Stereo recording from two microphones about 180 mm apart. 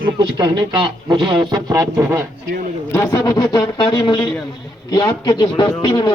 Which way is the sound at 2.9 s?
15° left (ahead or behind).